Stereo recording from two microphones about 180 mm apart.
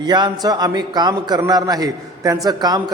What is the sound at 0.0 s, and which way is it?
A man's voice, 25° right (ahead or behind).